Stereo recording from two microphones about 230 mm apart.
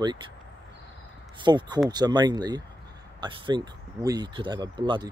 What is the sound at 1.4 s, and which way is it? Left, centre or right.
Speech, centre.